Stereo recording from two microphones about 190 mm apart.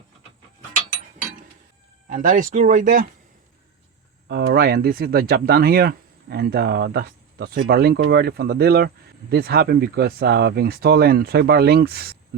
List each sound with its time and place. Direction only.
2.0 s speech: 40° right (ahead or behind)
4.3 s speech: 55° right (ahead or behind)